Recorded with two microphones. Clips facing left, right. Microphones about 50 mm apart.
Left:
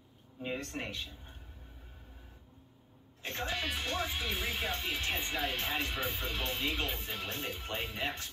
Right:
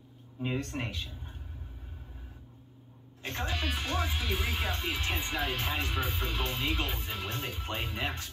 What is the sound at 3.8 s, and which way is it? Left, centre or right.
Speech, centre.